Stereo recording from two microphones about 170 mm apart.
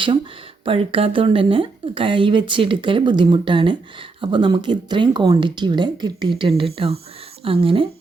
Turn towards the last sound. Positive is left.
turn(degrees=-30)  # may be behind; listen again after turning